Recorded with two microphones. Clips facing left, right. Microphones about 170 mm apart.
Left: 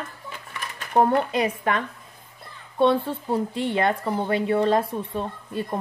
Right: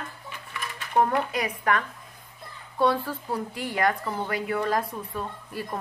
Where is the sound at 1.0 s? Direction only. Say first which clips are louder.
Left 4 dB; 30° left (ahead or behind).